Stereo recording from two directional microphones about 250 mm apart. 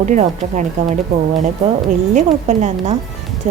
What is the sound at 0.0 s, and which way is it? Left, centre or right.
Speech, right.